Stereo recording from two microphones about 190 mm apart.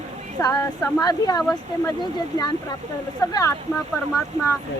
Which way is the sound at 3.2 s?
20° left (ahead or behind).